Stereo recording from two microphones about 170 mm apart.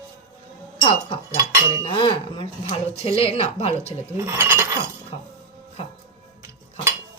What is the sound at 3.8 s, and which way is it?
Speech, 15° right (ahead or behind).